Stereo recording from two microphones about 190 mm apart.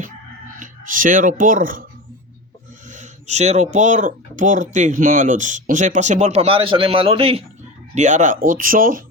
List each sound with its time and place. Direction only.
0.6 s speech: 45° right (ahead or behind)
2.9 s speech: 40° right (ahead or behind)